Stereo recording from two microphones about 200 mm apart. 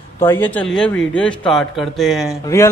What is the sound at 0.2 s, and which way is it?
Speech, 10° left (ahead or behind).